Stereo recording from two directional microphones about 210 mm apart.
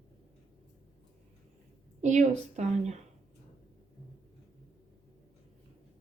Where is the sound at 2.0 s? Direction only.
35° right (ahead or behind).